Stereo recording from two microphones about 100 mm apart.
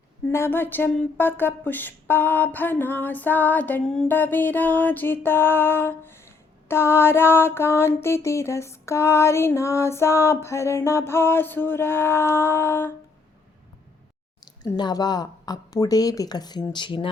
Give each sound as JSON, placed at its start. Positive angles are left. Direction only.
{"t": 0.3, "sound": "music", "side_deg": 25}
{"t": 4.1, "sound": "music", "side_deg": 20}
{"t": 14.8, "sound": "speech", "side_deg": 45}